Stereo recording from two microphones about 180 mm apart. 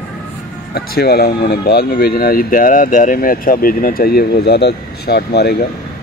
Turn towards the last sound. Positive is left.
turn(degrees=65)  # may be behind; listen again after turning